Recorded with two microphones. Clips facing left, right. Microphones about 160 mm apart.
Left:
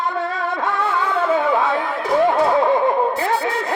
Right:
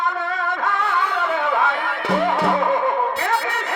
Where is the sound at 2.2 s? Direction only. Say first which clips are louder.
Left 4 dB; 25° left (ahead or behind).